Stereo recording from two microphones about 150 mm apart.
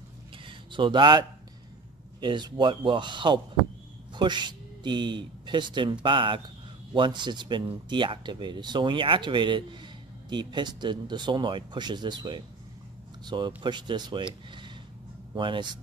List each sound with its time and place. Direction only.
0.5 s a sound: 35° right (ahead or behind)
2.1 s speech: 30° right (ahead or behind)
15.3 s speech: 30° right (ahead or behind)